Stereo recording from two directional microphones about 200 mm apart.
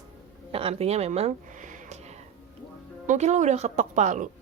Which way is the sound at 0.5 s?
30° right (ahead or behind).